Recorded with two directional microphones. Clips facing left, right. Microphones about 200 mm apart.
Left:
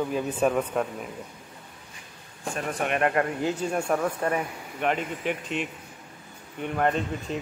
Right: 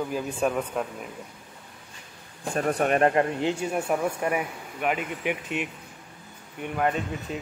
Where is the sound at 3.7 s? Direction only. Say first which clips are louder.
Even; 5° right (ahead or behind).